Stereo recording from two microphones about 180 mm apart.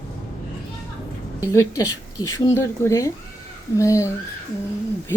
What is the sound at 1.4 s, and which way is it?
A woman's voice, 20° left (ahead or behind).